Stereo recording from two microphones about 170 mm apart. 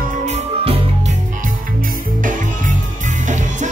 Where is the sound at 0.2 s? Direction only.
40° right (ahead or behind).